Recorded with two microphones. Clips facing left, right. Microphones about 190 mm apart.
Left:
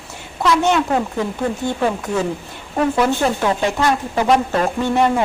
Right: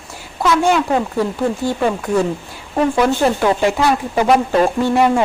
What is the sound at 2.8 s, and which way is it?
Speech, 5° right (ahead or behind).